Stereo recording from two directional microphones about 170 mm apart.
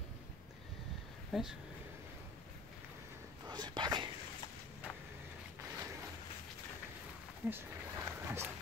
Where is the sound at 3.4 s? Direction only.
25° right (ahead or behind).